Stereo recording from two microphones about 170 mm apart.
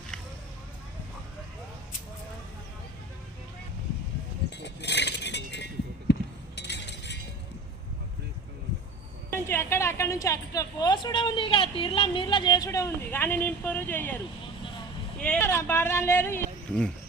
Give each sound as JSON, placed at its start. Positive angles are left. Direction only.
{"t": 4.4, "sound": "a sound", "side_deg": 90}
{"t": 6.6, "sound": "chink", "side_deg": 90}
{"t": 9.5, "sound": "a woman's voice", "side_deg": 15}
{"t": 15.2, "sound": "speech", "side_deg": 10}